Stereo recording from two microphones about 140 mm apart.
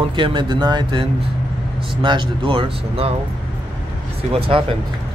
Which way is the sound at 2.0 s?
35° right (ahead or behind).